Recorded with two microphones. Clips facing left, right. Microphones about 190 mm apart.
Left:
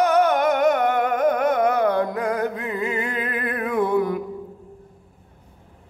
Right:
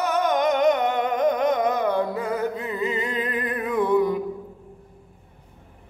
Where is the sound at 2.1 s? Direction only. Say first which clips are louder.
Left 2 dB; 15° left (ahead or behind).